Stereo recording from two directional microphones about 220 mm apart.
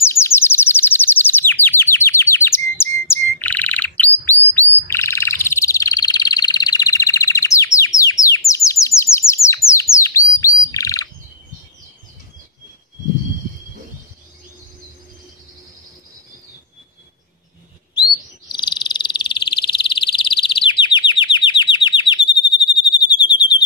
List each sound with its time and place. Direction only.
0.0 s chirp: 10° left (ahead or behind)
9.7 s bird: 15° left (ahead or behind)
18.5 s frog: 20° left (ahead or behind)
22.5 s a sound: 20° left (ahead or behind)